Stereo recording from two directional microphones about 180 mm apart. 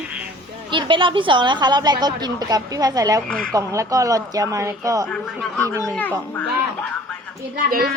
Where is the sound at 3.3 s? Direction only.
5° left (ahead or behind).